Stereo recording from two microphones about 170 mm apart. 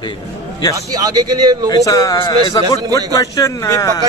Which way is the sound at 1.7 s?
20° left (ahead or behind).